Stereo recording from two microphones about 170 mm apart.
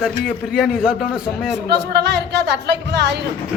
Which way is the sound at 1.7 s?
80° right.